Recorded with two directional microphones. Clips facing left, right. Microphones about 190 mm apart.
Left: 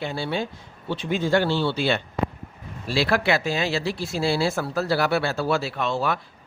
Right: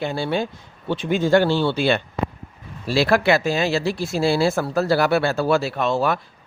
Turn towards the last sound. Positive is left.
turn(degrees=-45)  # may be behind; listen again after turning